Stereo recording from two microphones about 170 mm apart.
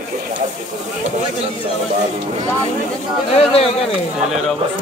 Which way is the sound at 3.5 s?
35° left (ahead or behind).